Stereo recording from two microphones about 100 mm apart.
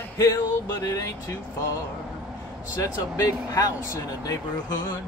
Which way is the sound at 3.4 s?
35° left (ahead or behind).